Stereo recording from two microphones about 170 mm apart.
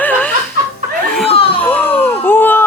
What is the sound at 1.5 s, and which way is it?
Baby cry, 10° left (ahead or behind).